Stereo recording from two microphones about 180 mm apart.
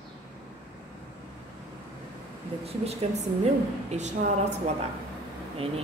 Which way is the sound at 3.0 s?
35° right (ahead or behind).